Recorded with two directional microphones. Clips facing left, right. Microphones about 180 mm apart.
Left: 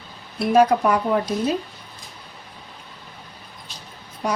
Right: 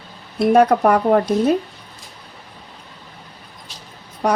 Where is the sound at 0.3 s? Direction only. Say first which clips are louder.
Right 3 dB; 55° right (ahead or behind).